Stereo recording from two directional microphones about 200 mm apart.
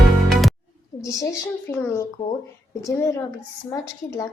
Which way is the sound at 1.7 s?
15° left (ahead or behind).